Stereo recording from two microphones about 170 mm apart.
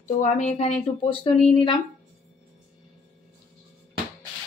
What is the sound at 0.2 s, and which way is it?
Speech, 40° left (ahead or behind).